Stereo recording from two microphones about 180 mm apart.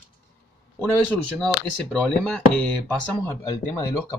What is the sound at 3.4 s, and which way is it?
Speech, 20° left (ahead or behind).